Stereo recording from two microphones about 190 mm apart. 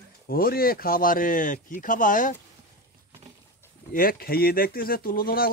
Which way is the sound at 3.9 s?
50° left (ahead or behind).